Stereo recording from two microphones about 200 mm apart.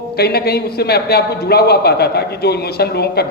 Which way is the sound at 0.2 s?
50° left (ahead or behind).